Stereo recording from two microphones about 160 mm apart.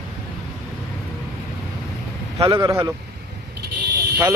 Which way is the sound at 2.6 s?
20° right (ahead or behind).